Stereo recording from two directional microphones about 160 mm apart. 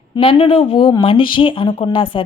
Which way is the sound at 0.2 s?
35° left (ahead or behind).